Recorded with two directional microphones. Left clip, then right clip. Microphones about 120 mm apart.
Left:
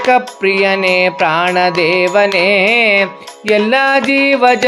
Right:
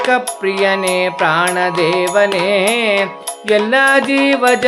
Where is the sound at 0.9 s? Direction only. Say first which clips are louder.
Left 2 dB; 40° left (ahead or behind).